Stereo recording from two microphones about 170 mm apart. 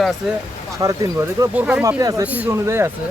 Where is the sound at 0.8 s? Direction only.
20° right (ahead or behind).